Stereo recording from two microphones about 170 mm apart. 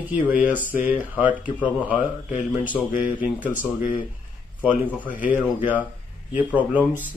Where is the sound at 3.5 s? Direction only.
50° left (ahead or behind).